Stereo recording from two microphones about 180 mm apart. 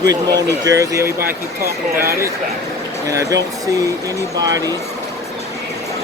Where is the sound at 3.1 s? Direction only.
20° right (ahead or behind).